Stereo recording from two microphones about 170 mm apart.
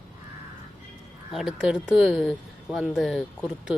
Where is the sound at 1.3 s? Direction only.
Centre (ahead or behind).